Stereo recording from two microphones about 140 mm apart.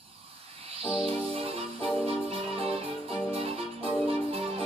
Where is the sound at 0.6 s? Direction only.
45° right (ahead or behind).